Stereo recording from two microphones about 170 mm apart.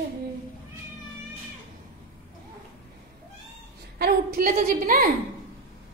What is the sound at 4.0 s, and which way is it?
A woman's voice, 60° right (ahead or behind).